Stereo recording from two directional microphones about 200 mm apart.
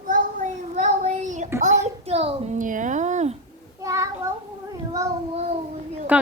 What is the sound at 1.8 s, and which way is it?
A child's voice, 30° right (ahead or behind).